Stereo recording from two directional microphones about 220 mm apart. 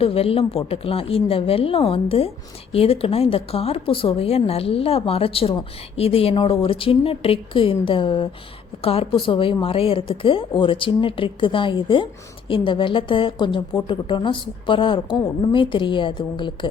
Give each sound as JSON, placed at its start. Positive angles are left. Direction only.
{"t": 0.0, "sound": "a woman's voice", "side_deg": 25}